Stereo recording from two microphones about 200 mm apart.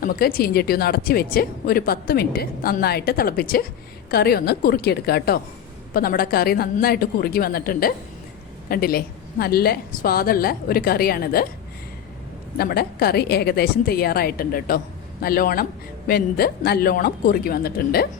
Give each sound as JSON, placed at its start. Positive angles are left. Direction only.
{"t": 0.0, "sound": "a woman's voice", "side_deg": 45}
{"t": 12.5, "sound": "a woman's voice", "side_deg": 50}